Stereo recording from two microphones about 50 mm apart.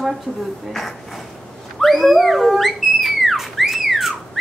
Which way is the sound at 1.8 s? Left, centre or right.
Centre.